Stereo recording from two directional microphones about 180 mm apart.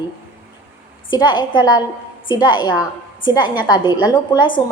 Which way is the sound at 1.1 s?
25° left (ahead or behind).